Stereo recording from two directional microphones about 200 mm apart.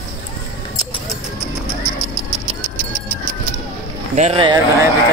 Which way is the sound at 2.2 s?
15° left (ahead or behind).